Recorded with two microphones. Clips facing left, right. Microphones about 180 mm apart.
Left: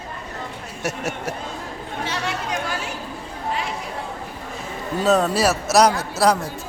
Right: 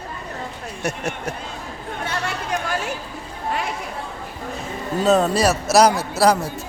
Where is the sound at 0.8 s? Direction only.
5° left (ahead or behind).